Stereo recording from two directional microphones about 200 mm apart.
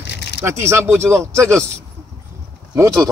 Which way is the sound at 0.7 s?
15° right (ahead or behind).